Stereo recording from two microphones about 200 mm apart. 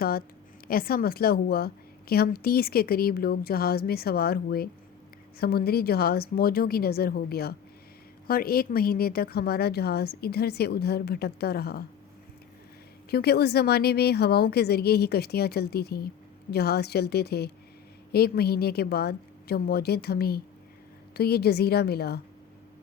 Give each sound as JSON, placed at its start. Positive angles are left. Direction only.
{"t": 0.0, "sound": "a woman's voice", "side_deg": 50}
{"t": 13.1, "sound": "a woman's voice", "side_deg": 55}